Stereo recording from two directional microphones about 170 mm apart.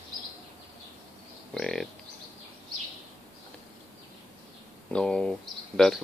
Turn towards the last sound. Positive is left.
turn(degrees=0)  # may be behind; listen again after turning